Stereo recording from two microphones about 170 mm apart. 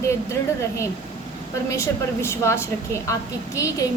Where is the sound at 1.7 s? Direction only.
15° left (ahead or behind).